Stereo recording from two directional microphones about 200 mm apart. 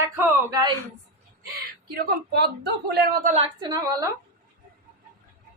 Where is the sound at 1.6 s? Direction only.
50° right (ahead or behind).